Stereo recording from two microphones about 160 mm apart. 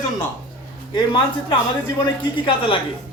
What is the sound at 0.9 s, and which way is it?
A man's voice, 30° left (ahead or behind).